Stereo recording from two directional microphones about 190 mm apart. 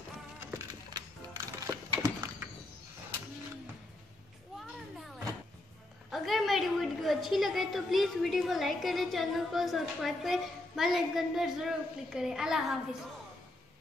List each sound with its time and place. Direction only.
0.4 s music: 15° right (ahead or behind)
6.0 s a woman's voice: centre (ahead or behind)